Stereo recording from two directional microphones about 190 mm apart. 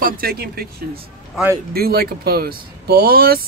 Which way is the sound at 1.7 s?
55° right (ahead or behind).